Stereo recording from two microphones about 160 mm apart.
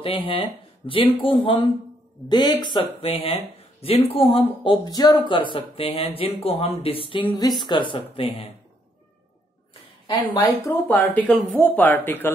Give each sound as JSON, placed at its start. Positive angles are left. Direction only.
{"t": 0.0, "sound": "a woman's voice", "side_deg": 35}
{"t": 10.3, "sound": "speech", "side_deg": 20}